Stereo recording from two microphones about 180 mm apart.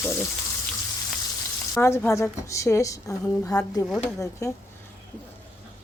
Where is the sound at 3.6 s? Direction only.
Centre (ahead or behind).